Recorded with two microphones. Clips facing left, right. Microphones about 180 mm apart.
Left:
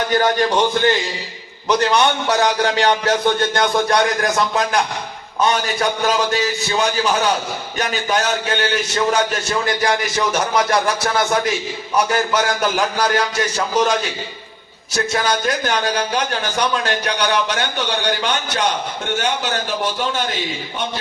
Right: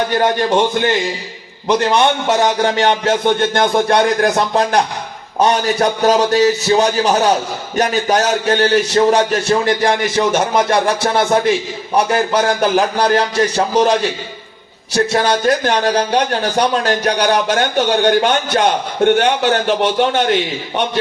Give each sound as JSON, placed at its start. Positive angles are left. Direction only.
{"t": 1.6, "sound": "a man's voice", "side_deg": -20}
{"t": 5.4, "sound": "music", "side_deg": -35}
{"t": 7.8, "sound": "a man's voice", "side_deg": -40}
{"t": 11.9, "sound": "music", "side_deg": -30}
{"t": 14.9, "sound": "speech", "side_deg": -35}